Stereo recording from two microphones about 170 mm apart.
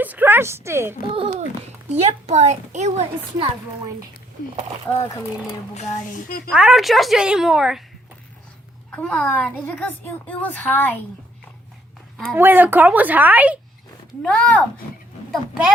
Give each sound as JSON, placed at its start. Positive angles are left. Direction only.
{"t": 0.0, "sound": "a woman's voice", "side_deg": -10}
{"t": 1.0, "sound": "a woman's voice", "side_deg": -30}
{"t": 4.9, "sound": "a woman's voice", "side_deg": 15}
{"t": 6.1, "sound": "speech", "side_deg": 55}
{"t": 6.5, "sound": "speech", "side_deg": -5}
{"t": 8.9, "sound": "a woman's voice", "side_deg": 5}
{"t": 12.1, "sound": "speech", "side_deg": -10}
{"t": 14.2, "sound": "a woman's voice", "side_deg": 5}
{"t": 15.3, "sound": "speech", "side_deg": -5}